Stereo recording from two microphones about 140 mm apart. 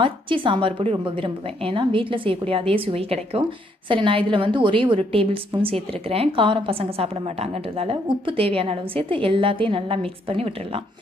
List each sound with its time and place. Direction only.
0.0 s a woman's voice: 35° right (ahead or behind)